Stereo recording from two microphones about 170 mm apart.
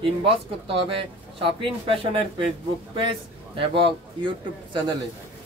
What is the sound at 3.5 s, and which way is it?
Speech, 30° right (ahead or behind).